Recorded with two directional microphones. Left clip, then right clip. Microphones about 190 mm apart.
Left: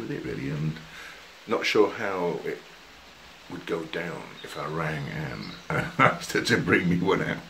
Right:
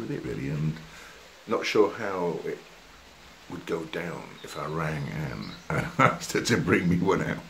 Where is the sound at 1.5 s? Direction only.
10° left (ahead or behind).